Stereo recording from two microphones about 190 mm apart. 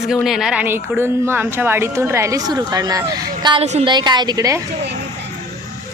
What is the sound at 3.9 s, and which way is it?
Speech, 25° right (ahead or behind).